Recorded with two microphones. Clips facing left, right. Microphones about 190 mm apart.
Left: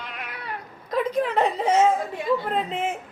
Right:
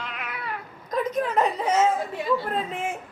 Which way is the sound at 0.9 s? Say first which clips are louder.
Left 1 dB; 30° left (ahead or behind).